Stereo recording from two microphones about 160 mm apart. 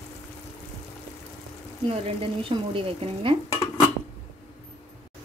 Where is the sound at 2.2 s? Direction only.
35° right (ahead or behind).